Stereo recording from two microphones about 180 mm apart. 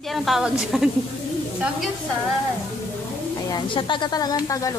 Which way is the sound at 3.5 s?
25° left (ahead or behind).